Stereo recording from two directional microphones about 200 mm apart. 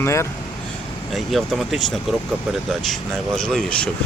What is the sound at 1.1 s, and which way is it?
Speech, centre (ahead or behind).